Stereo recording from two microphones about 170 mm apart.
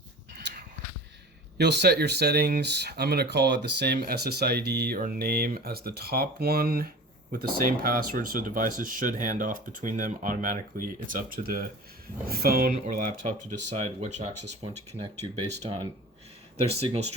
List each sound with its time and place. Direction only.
1.5 s speech: 80° right
4.9 s speech: 55° right (ahead or behind); by 17.2 s 40° right (ahead or behind)